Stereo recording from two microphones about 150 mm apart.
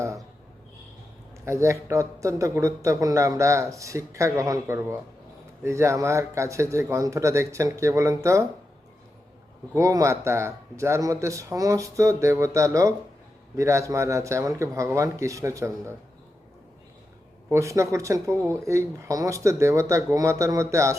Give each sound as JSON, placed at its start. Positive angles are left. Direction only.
{"t": 1.5, "sound": "speech", "side_deg": -20}
{"t": 9.7, "sound": "speech", "side_deg": -20}
{"t": 17.5, "sound": "speech", "side_deg": -20}